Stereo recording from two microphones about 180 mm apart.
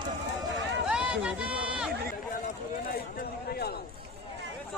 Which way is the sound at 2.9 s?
60° left (ahead or behind).